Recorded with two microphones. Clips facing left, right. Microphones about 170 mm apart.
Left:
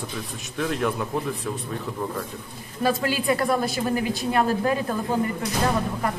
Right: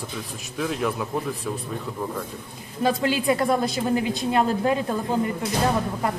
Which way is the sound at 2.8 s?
20° right (ahead or behind).